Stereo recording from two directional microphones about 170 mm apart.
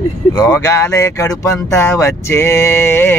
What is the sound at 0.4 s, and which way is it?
Speech, 15° left (ahead or behind).